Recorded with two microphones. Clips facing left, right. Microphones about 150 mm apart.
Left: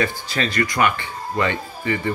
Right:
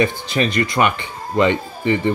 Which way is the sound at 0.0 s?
20° right (ahead or behind).